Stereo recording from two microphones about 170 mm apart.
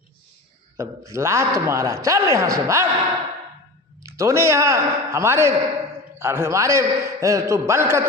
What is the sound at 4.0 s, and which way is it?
A man's voice, 20° right (ahead or behind).